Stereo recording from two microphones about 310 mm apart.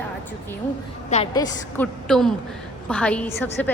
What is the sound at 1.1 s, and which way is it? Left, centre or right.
Speech, centre.